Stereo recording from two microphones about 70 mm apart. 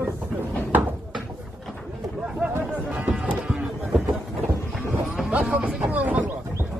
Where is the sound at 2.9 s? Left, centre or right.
Centre.